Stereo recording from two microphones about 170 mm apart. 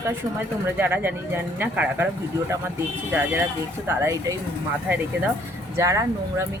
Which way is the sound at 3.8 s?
15° right (ahead or behind).